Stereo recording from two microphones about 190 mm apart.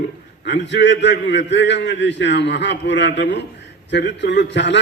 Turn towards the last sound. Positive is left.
turn(degrees=70)  # may be behind; listen again after turning